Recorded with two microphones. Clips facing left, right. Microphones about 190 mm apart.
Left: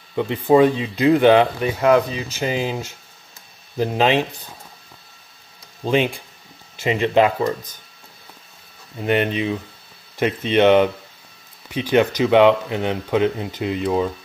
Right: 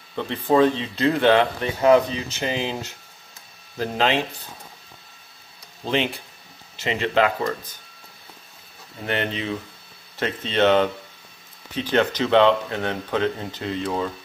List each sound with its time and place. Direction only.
0.1 s speech: 15° left (ahead or behind)
5.9 s speech: 15° left (ahead or behind)
9.0 s speech: 15° left (ahead or behind)